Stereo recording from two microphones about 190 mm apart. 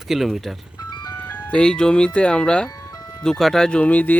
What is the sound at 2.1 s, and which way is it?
Speech, 5° left (ahead or behind).